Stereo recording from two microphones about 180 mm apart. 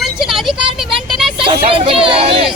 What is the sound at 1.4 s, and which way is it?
Speech, 30° right (ahead or behind).